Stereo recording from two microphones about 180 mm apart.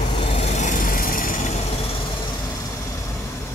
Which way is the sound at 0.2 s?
35° left (ahead or behind).